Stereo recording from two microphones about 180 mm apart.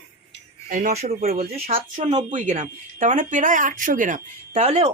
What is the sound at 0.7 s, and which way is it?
Speech, 40° right (ahead or behind).